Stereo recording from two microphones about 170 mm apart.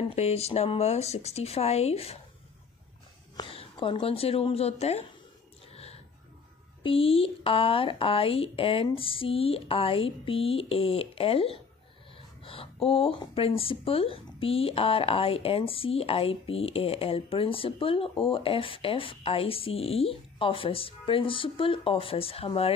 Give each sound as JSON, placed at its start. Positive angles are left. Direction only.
{"t": 0.1, "sound": "speech", "side_deg": 35}
{"t": 3.3, "sound": "a woman's voice", "side_deg": 30}
{"t": 6.8, "sound": "speech", "side_deg": 35}